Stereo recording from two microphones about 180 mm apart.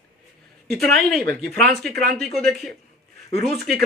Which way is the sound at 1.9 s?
60° right (ahead or behind).